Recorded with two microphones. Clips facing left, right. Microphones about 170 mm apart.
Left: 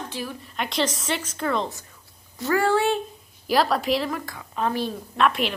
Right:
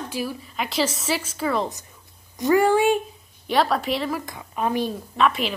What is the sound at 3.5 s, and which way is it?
Speech, centre (ahead or behind).